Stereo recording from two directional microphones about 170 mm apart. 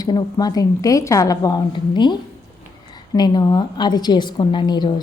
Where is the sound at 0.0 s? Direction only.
25° left (ahead or behind).